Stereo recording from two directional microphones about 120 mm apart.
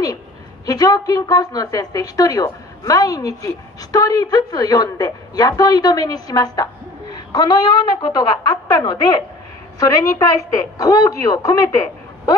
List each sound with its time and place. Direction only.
0.7 s a woman's voice: 30° left (ahead or behind)